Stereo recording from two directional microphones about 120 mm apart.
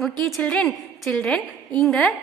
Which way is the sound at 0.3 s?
5° left (ahead or behind).